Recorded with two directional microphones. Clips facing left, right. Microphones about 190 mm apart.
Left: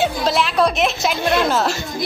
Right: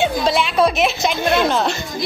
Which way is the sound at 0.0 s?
Centre (ahead or behind).